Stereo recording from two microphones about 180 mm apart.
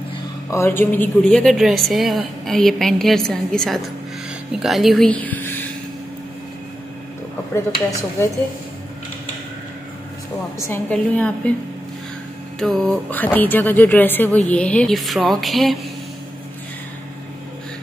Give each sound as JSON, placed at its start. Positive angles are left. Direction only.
{"t": 0.5, "sound": "a woman's voice", "side_deg": 15}
{"t": 10.7, "sound": "speech", "side_deg": 5}
{"t": 12.5, "sound": "speech", "side_deg": 0}